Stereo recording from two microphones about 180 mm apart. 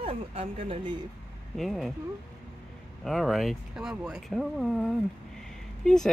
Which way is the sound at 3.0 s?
Centre (ahead or behind).